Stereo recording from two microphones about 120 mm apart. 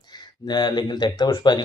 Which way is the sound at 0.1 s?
35° left (ahead or behind).